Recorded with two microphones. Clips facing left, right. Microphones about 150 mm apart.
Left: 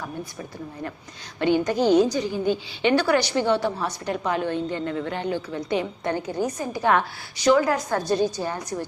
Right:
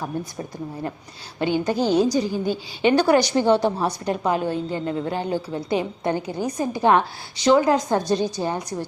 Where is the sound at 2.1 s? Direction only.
35° right (ahead or behind).